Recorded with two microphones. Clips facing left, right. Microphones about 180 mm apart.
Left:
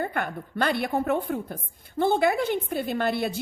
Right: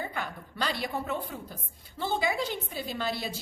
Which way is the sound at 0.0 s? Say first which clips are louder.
Left 7 dB; 55° left (ahead or behind).